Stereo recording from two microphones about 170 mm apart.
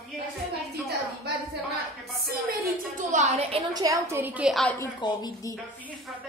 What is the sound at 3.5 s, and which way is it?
A woman's voice, 25° right (ahead or behind).